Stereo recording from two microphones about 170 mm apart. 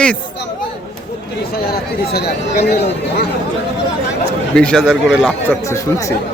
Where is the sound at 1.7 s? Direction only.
65° left (ahead or behind).